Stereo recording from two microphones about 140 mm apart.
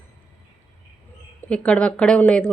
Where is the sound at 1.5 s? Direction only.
10° left (ahead or behind).